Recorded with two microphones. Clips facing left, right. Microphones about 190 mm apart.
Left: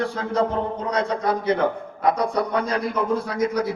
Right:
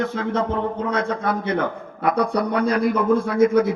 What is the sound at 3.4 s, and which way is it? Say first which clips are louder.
Speech: right 8 dB; 25° right (ahead or behind).